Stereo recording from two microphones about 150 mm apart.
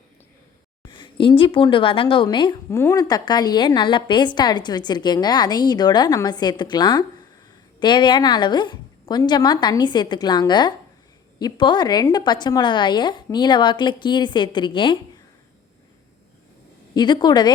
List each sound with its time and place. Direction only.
0.9 s speech: 30° left (ahead or behind)
2.6 s a woman's voice: 20° left (ahead or behind)
16.9 s a woman's voice: 30° left (ahead or behind)